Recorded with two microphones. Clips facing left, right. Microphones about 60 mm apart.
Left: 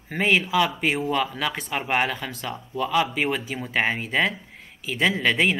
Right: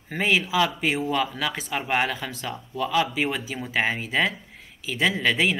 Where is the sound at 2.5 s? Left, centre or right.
Centre.